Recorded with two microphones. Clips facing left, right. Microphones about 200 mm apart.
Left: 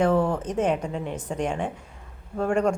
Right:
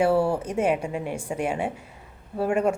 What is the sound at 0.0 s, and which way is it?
A woman's voice, 10° right (ahead or behind).